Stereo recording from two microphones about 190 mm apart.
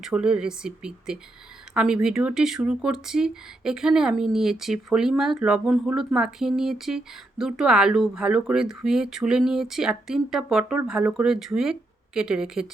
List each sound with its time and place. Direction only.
0.0 s speech: 5° right (ahead or behind)